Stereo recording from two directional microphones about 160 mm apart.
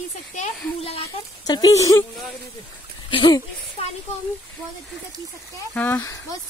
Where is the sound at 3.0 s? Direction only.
30° left (ahead or behind).